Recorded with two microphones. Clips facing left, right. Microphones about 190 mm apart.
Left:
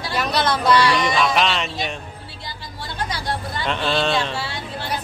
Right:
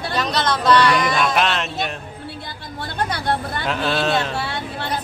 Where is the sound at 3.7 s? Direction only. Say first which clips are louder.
Even; centre (ahead or behind).